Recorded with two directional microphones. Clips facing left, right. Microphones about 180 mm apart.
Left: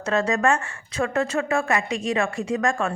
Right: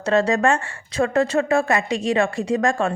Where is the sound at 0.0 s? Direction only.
35° right (ahead or behind).